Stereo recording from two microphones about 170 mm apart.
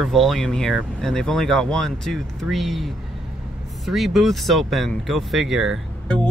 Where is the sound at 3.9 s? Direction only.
Centre (ahead or behind).